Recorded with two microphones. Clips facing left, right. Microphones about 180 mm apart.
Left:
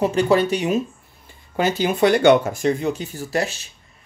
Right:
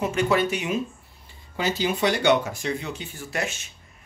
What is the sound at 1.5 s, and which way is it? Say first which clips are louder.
Speech: left 6 dB; 55° left (ahead or behind).